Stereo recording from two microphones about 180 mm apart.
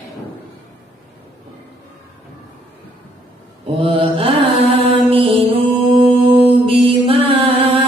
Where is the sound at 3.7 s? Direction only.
30° right (ahead or behind).